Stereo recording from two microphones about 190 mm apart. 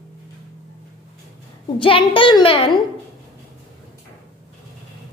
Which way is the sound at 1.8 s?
25° left (ahead or behind).